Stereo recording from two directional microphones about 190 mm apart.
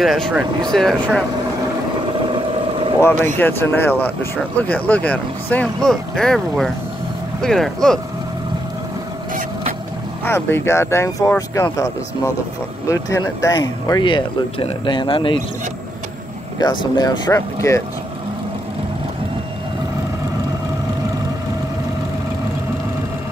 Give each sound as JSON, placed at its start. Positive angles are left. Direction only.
{"t": 0.0, "sound": "speech", "side_deg": -5}
{"t": 2.0, "sound": "vehicle", "side_deg": -25}
{"t": 3.0, "sound": "speech", "side_deg": 10}
{"t": 10.2, "sound": "speech", "side_deg": 10}
{"t": 16.5, "sound": "speech", "side_deg": 20}